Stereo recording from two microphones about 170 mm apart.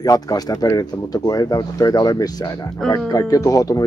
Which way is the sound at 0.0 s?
20° left (ahead or behind).